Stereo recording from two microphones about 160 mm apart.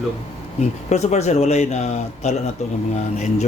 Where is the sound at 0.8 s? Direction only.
45° left (ahead or behind).